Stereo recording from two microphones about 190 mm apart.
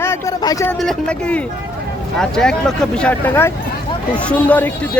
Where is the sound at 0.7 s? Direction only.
5° left (ahead or behind).